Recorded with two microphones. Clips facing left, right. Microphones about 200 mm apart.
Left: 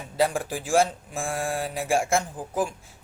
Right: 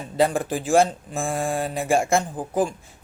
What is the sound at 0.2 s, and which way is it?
Speech, 10° left (ahead or behind).